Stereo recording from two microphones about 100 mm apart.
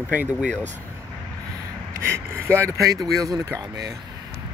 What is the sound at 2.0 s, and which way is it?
Speech, 25° right (ahead or behind).